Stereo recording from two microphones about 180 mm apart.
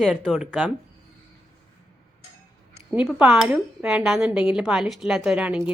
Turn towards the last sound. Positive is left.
turn(degrees=-5)  # may be behind; listen again after turning